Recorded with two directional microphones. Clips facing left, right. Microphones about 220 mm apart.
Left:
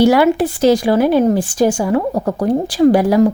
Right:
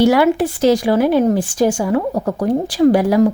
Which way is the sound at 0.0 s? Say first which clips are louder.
Left 1 dB; 30° left (ahead or behind).